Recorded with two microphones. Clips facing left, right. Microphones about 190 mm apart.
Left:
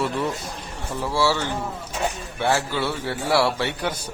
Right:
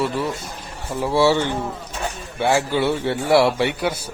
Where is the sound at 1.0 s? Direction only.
20° right (ahead or behind).